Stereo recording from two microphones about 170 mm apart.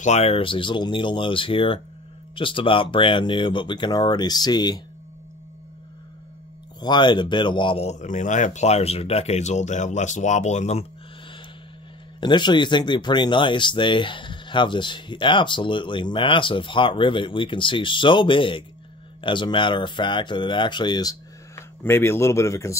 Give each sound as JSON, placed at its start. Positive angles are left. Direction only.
{"t": 0.0, "sound": "speech", "side_deg": 40}
{"t": 6.8, "sound": "speech", "side_deg": 25}
{"t": 12.2, "sound": "speech", "side_deg": 25}